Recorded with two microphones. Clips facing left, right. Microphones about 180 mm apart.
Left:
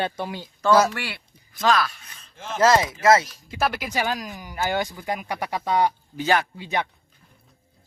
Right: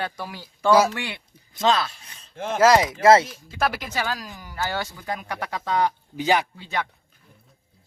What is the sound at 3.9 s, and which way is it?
Speech, 15° left (ahead or behind).